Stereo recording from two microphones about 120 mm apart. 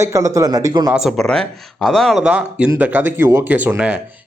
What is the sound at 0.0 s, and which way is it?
Speech, 25° right (ahead or behind).